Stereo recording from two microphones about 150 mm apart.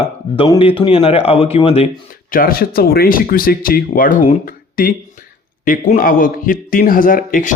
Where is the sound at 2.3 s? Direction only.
75° left (ahead or behind).